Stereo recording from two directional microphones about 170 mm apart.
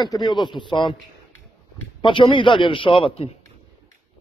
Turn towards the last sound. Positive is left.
turn(degrees=35)  # may be behind; listen again after turning